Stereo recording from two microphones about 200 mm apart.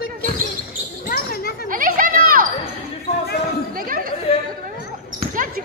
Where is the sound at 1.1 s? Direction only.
50° left (ahead or behind).